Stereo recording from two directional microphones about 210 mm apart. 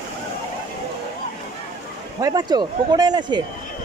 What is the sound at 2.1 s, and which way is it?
Speech, 20° right (ahead or behind).